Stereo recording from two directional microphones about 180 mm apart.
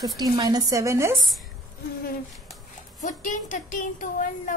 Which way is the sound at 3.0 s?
45° left (ahead or behind).